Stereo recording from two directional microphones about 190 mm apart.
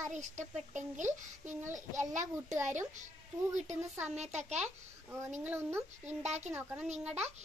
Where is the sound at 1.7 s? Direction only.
40° right (ahead or behind).